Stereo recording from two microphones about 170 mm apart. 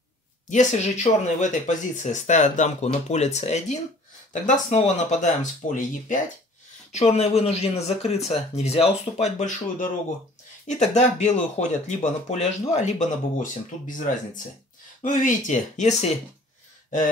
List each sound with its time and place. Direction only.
0.5 s speech: 45° left (ahead or behind)